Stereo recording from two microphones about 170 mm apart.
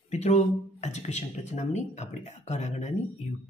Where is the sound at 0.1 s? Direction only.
40° left (ahead or behind).